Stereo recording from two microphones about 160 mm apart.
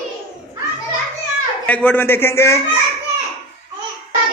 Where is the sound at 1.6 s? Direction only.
10° left (ahead or behind).